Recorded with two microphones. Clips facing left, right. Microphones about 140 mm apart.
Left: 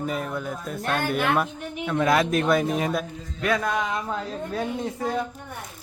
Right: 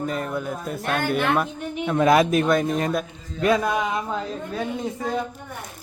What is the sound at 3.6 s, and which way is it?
Speech, 10° right (ahead or behind).